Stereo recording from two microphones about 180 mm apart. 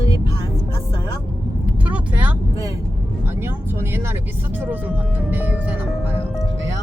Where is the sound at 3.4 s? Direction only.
10° right (ahead or behind).